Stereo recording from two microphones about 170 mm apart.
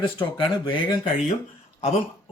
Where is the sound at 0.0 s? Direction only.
30° left (ahead or behind).